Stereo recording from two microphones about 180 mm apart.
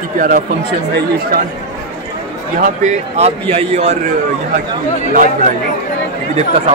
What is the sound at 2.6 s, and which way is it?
Speech, 40° right (ahead or behind).